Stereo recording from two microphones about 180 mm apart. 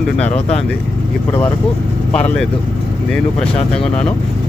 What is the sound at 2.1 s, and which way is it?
Speech, 5° left (ahead or behind).